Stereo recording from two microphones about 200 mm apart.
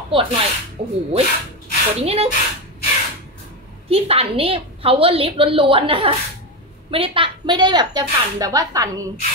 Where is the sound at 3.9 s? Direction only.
30° right (ahead or behind).